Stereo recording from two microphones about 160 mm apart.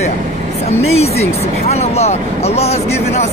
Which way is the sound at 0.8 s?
40° left (ahead or behind).